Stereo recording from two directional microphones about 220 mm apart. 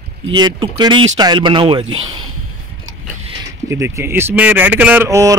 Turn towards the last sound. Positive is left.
turn(degrees=-15)  # may be behind; listen again after turning